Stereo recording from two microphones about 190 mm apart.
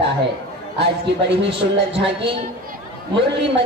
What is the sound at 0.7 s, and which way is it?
Speech, 65° right (ahead or behind).